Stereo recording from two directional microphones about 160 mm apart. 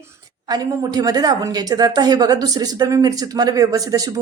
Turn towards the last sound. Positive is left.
turn(degrees=-20)  # may be behind; listen again after turning